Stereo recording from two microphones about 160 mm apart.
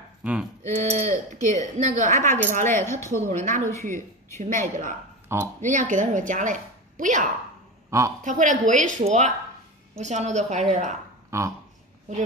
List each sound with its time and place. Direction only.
0.2 s speech: 10° right (ahead or behind)
0.7 s a woman's voice: 45° right (ahead or behind)
2.8 s speech: 15° left (ahead or behind)
3.2 s a woman's voice: 50° right (ahead or behind)
11.2 s speech: 20° right (ahead or behind)